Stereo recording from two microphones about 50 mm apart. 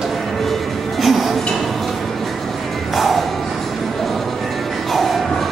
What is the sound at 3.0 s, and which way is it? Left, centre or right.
Music, centre.